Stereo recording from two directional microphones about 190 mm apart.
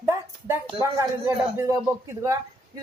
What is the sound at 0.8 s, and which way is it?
A man's voice, 15° right (ahead or behind).